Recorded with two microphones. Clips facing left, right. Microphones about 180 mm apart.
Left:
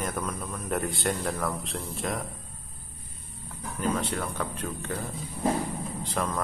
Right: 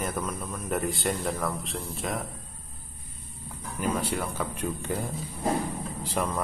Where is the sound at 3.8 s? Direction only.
10° right (ahead or behind).